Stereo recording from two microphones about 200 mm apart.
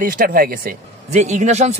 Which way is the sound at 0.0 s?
45° right (ahead or behind).